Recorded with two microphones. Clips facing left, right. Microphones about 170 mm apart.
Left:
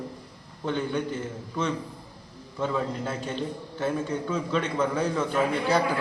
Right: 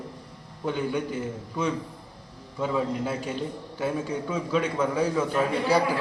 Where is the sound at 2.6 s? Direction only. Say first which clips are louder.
Right 2 dB; 10° right (ahead or behind).